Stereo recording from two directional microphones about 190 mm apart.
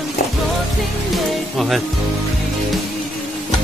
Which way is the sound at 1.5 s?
Centre (ahead or behind).